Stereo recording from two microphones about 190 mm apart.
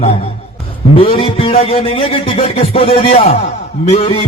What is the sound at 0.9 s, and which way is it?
A man's voice, 30° left (ahead or behind).